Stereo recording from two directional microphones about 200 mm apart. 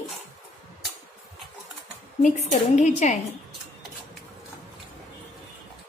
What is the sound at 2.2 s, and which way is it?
Speech, 40° left (ahead or behind).